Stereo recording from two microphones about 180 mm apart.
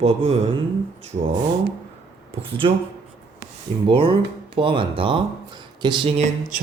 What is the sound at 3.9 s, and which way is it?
Speech, 30° right (ahead or behind).